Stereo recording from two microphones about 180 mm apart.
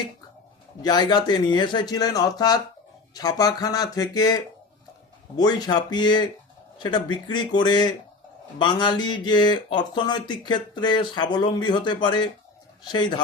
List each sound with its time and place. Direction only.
0.8 s speech: 25° left (ahead or behind)
5.4 s speech: 20° left (ahead or behind)